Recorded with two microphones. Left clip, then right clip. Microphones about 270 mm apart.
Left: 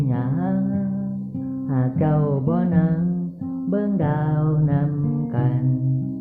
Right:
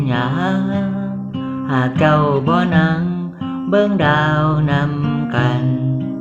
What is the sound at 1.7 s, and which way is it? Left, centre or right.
Music, centre.